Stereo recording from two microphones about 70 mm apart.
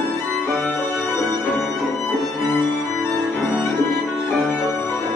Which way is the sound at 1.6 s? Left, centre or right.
Centre.